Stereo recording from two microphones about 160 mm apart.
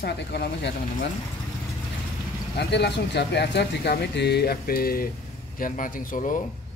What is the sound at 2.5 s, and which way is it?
Speech, 90° left.